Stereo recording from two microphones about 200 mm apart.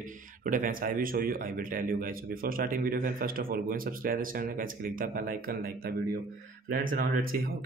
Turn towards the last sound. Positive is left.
turn(degrees=-45)  # may be behind; listen again after turning